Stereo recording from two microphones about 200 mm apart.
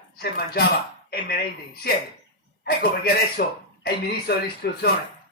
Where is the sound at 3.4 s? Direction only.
45° left (ahead or behind).